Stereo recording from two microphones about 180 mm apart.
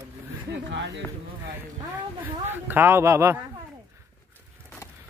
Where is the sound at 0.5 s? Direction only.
75° right (ahead or behind).